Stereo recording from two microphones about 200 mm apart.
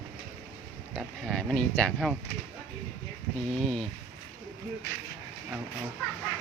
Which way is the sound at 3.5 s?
Centre (ahead or behind).